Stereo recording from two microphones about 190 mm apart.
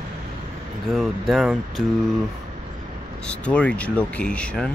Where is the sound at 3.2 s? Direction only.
5° left (ahead or behind).